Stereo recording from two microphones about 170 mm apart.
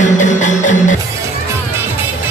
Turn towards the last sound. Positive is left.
turn(degrees=45)  # may be behind; listen again after turning